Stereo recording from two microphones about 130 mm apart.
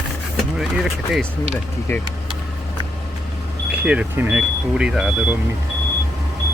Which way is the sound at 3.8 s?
10° right (ahead or behind).